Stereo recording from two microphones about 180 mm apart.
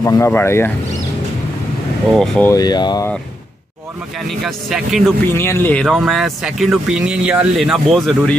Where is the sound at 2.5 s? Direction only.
20° left (ahead or behind).